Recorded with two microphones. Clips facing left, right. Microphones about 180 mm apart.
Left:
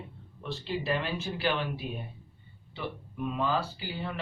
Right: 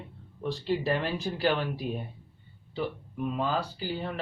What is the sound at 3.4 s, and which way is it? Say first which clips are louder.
Speech: left 1 dB; 40° right (ahead or behind).